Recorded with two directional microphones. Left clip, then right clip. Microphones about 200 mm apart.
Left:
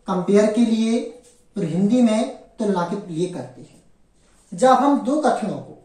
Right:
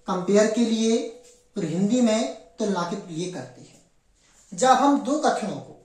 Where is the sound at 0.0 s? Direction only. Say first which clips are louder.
Left 3 dB; 15° right (ahead or behind).